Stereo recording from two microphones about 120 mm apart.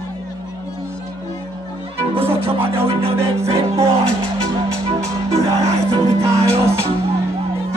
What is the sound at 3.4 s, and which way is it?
Music, 55° right (ahead or behind).